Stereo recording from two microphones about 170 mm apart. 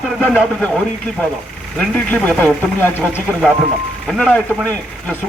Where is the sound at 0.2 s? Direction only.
5° left (ahead or behind).